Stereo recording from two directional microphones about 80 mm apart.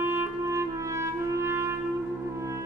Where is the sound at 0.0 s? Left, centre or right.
Right.